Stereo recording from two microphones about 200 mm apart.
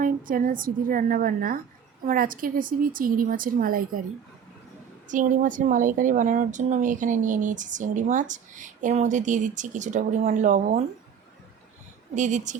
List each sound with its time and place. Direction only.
0.0 s a woman's voice: 45° right (ahead or behind)
5.0 s a woman's voice: 40° right (ahead or behind)
12.1 s a woman's voice: 40° right (ahead or behind)